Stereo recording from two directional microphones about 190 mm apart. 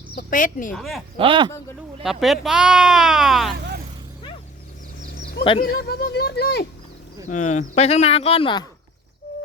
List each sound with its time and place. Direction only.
0.2 s speech: 45° left (ahead or behind)
0.7 s speech: centre (ahead or behind)
1.2 s speech: 25° right (ahead or behind)
2.0 s speech: centre (ahead or behind)
5.1 s a sound: 55° left (ahead or behind)
5.4 s speech: 25° left (ahead or behind)
5.6 s speech: 55° left (ahead or behind)
7.3 s speech: 40° left (ahead or behind)